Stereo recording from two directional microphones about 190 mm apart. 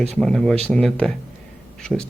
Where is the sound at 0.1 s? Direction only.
5° left (ahead or behind).